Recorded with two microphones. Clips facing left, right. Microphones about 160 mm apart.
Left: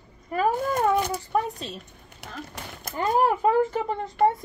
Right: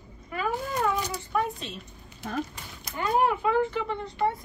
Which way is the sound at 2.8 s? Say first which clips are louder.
Left 2 dB; 40° left (ahead or behind).